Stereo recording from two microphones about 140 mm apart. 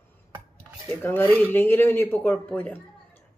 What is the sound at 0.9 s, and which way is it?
Speech, 15° left (ahead or behind).